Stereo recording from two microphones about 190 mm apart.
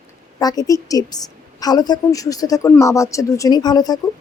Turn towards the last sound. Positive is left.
turn(degrees=20)  # may be behind; listen again after turning